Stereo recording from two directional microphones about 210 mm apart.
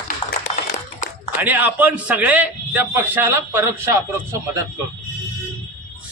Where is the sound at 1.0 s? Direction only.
40° left (ahead or behind).